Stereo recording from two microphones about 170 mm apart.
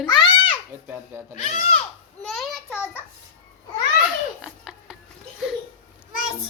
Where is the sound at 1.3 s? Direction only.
40° left (ahead or behind).